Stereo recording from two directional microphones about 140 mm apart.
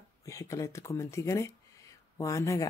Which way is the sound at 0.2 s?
25° left (ahead or behind).